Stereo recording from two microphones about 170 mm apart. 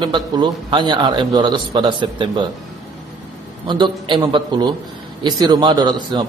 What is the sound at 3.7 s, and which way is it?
A man's voice, 25° right (ahead or behind).